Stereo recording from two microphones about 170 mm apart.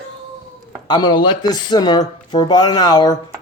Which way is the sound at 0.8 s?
25° left (ahead or behind).